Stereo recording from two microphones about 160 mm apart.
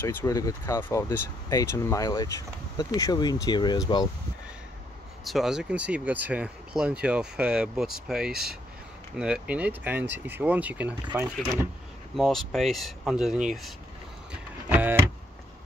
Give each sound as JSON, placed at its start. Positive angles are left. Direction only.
{"t": 0.0, "sound": "speech", "side_deg": 15}
{"t": 5.2, "sound": "speech", "side_deg": 0}
{"t": 12.2, "sound": "speech", "side_deg": 0}
{"t": 14.7, "sound": "power windows", "side_deg": -10}